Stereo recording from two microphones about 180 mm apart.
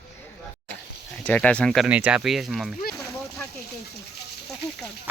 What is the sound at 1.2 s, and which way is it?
Speech, 5° left (ahead or behind).